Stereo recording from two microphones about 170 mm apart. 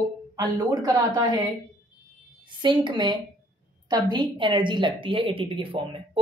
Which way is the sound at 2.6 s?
25° right (ahead or behind).